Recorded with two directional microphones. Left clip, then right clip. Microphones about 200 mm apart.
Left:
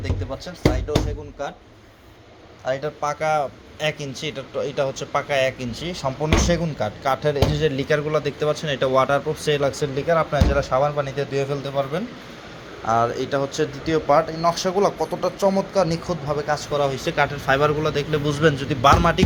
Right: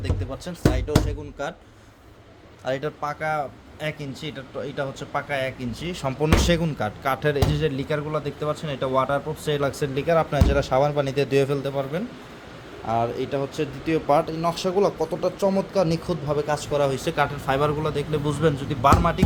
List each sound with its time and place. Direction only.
0.0 s speech: 35° right (ahead or behind)
2.6 s speech: 40° right (ahead or behind)
3.0 s speech: 5° right (ahead or behind)
5.8 s a man's voice: 25° right (ahead or behind)
6.2 s speech: 35° right (ahead or behind)
6.7 s a man's voice: 20° right (ahead or behind)
7.8 s speech: centre (ahead or behind)
9.5 s speech: 15° right (ahead or behind); by 11.7 s 40° right (ahead or behind)
11.8 s speech: 15° right (ahead or behind)
14.1 s a man's voice: 30° right (ahead or behind); by 19.2 s centre (ahead or behind)